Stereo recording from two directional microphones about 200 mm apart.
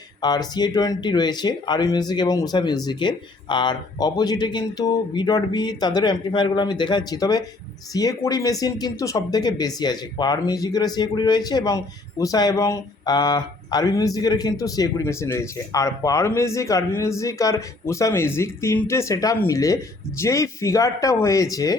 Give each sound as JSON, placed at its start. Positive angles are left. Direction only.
{"t": 0.2, "sound": "speech", "side_deg": 20}